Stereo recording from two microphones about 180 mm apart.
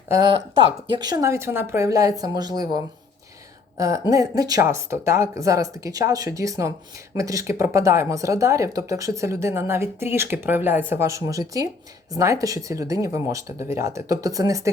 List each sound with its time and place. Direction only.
0.1 s speech: 25° right (ahead or behind)
3.8 s speech: 15° right (ahead or behind)